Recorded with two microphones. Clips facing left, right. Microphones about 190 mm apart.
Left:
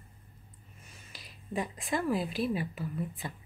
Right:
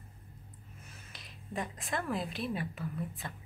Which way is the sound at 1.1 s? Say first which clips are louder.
Even; centre (ahead or behind).